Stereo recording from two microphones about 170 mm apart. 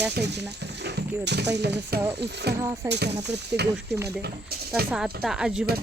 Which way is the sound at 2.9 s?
80° right.